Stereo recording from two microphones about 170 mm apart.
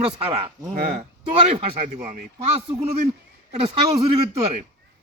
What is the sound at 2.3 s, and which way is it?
A man's voice, 30° right (ahead or behind).